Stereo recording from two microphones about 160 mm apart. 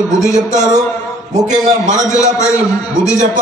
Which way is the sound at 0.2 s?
50° right (ahead or behind).